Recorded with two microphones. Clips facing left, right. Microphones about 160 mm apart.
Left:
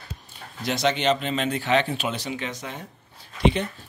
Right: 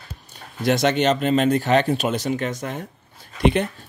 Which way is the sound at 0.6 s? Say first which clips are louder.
Right 4 dB; 50° right (ahead or behind).